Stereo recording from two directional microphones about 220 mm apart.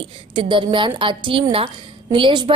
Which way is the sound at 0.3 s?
20° right (ahead or behind).